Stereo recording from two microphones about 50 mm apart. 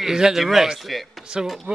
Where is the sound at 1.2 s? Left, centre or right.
Centre.